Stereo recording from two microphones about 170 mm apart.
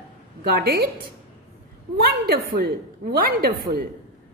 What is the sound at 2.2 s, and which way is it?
A woman's voice, 60° right (ahead or behind).